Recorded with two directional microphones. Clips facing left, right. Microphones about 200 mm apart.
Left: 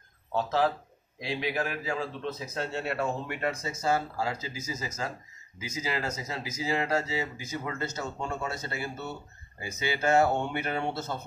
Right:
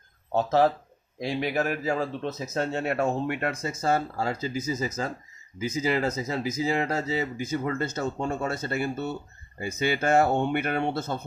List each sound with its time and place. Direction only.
0.3 s a man's voice: 45° right (ahead or behind)